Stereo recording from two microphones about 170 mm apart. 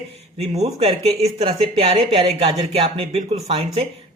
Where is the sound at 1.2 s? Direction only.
40° right (ahead or behind).